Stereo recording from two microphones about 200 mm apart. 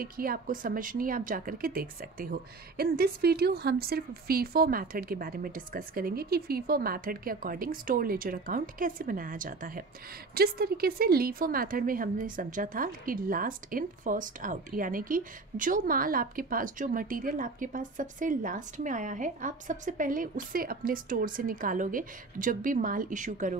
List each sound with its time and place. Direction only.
0.0 s speech: 45° right (ahead or behind)